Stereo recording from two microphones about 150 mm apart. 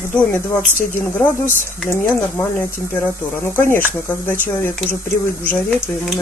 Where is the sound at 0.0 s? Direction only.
10° left (ahead or behind).